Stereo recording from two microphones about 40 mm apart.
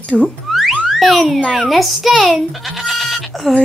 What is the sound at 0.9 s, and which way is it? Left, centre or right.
A child's voice, centre.